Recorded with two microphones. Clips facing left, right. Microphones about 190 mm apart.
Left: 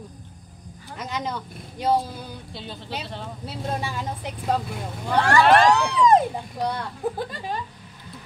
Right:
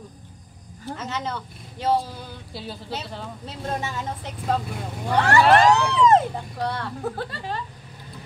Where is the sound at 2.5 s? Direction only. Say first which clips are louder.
Right 2 dB; 5° right (ahead or behind).